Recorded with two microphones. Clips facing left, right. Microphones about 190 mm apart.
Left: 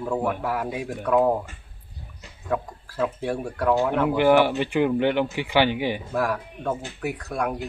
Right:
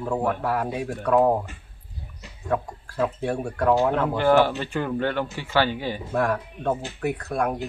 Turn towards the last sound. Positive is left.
turn(degrees=0)  # may be behind; listen again after turning